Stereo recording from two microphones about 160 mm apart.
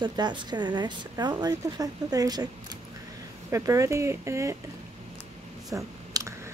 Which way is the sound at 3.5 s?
20° right (ahead or behind).